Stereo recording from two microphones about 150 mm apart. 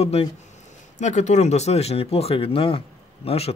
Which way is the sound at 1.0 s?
50° left (ahead or behind).